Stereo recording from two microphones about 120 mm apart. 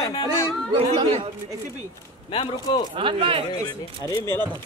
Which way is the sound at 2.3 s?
50° left (ahead or behind).